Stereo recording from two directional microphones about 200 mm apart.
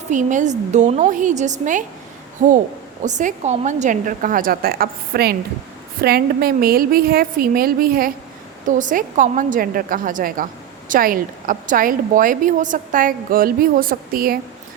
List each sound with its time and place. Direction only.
0.1 s a woman's voice: 40° right (ahead or behind)